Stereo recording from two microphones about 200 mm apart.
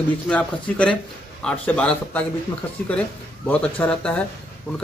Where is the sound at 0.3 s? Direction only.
5° left (ahead or behind).